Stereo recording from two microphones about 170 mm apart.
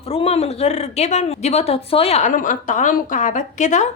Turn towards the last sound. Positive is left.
turn(degrees=45)  # may be behind; listen again after turning